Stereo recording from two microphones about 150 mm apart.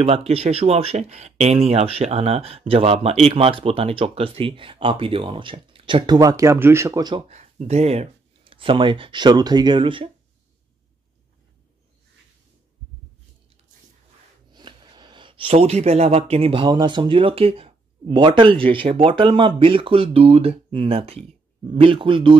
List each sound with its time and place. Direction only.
0.0 s speech: 40° right (ahead or behind)
7.2 s speech: 50° right (ahead or behind)
14.5 s speech: 30° right (ahead or behind)